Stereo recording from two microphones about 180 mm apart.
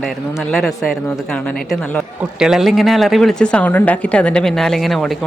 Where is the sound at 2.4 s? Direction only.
Centre (ahead or behind).